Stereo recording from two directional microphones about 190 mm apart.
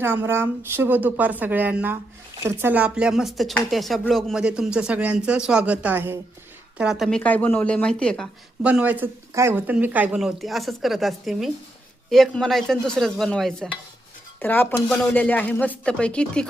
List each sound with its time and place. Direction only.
0.0 s a woman's voice: 10° right (ahead or behind); by 8.3 s 5° left (ahead or behind)
8.6 s speech: 5° right (ahead or behind)